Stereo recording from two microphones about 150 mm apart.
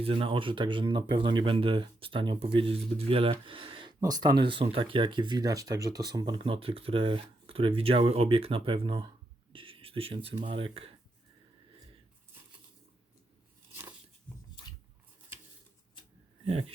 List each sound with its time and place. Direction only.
0.0 s speech: 40° right (ahead or behind)
6.4 s speech: 40° right (ahead or behind)
9.5 s a sound: 35° right (ahead or behind)
10.3 s speech: 35° right (ahead or behind)
16.5 s speech: 40° right (ahead or behind)